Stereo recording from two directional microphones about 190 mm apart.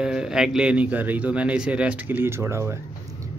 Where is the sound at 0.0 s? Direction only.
5° right (ahead or behind).